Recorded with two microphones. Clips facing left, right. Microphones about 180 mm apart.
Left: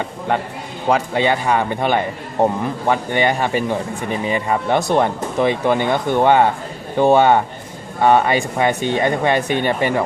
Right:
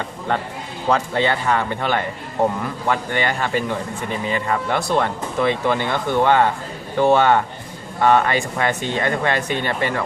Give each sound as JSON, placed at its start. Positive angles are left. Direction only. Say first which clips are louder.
{"t": 0.3, "sound": "a man's voice", "louder": "left 2 dB", "side_deg": 15}